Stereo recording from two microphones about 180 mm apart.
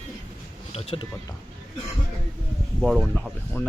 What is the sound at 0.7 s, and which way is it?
Speech, 35° left (ahead or behind).